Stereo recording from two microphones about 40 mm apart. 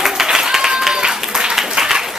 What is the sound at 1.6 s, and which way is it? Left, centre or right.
Applause, centre.